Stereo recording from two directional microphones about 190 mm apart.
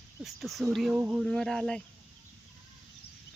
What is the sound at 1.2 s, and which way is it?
Speech, centre (ahead or behind).